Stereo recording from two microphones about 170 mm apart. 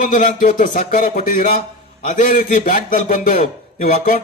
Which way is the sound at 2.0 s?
55° left (ahead or behind).